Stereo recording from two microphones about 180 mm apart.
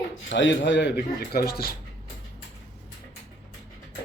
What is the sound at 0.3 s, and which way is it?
A man's voice, 90° left.